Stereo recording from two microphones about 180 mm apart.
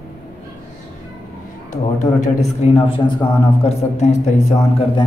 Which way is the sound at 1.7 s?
45° left (ahead or behind).